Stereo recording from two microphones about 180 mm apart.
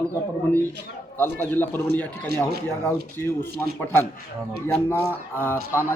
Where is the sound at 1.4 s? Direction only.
10° left (ahead or behind).